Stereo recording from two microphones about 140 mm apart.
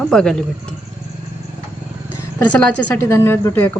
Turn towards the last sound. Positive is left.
turn(degrees=15)  # may be behind; listen again after turning